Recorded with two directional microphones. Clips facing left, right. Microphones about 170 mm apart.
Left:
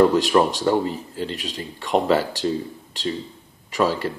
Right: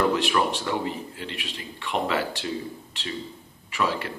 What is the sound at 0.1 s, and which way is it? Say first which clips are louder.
A man's voice: left 6 dB; 40° left (ahead or behind).